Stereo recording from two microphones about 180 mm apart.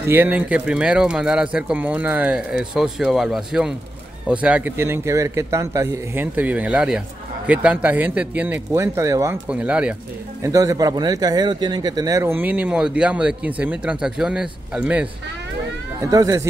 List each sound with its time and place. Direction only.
0.0 s speech: 10° right (ahead or behind)
9.5 s speech: 5° right (ahead or behind)
10.4 s speech: 20° right (ahead or behind)
16.0 s speech: 20° right (ahead or behind)